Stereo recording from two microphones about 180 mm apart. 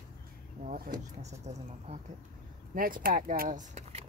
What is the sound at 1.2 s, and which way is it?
Speech, 40° right (ahead or behind).